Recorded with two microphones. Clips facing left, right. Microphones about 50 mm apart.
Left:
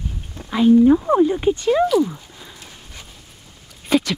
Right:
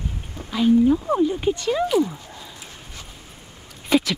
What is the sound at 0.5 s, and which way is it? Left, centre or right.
Speech, centre.